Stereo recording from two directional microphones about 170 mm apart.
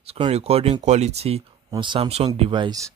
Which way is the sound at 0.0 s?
35° right (ahead or behind).